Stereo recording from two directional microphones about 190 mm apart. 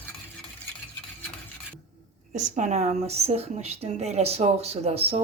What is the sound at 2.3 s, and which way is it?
A woman's voice, 40° right (ahead or behind).